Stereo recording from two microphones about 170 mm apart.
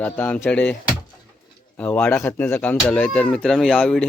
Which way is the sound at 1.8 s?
10° left (ahead or behind).